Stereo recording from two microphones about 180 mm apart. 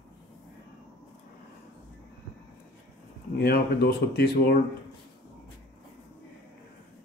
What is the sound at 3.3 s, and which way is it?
Speech, 60° left (ahead or behind).